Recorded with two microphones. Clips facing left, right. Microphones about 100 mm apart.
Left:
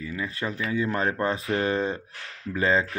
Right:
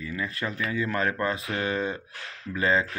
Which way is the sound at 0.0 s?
25° left (ahead or behind).